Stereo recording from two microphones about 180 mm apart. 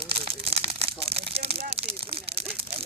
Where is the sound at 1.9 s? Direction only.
60° right (ahead or behind).